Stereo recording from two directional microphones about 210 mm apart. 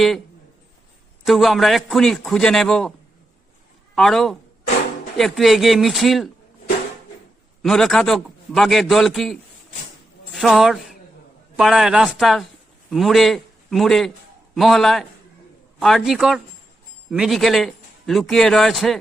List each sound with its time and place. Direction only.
1.2 s a man's voice: centre (ahead or behind)
3.9 s a man's voice: centre (ahead or behind)
7.6 s a man's voice: centre (ahead or behind)